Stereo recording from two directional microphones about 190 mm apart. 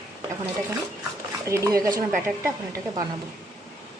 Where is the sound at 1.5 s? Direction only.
15° right (ahead or behind).